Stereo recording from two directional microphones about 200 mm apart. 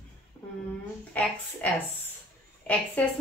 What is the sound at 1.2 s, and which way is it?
A woman's voice, 10° left (ahead or behind).